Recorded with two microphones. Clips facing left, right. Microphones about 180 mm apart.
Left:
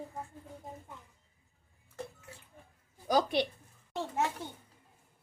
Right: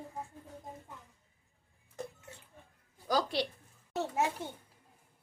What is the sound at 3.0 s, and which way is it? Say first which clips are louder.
Speech: left 3 dB; 20° left (ahead or behind).